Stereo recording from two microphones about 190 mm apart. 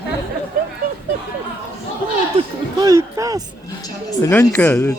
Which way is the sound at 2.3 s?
20° right (ahead or behind).